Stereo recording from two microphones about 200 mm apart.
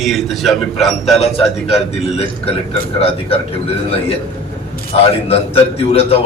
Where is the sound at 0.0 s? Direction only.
Centre (ahead or behind).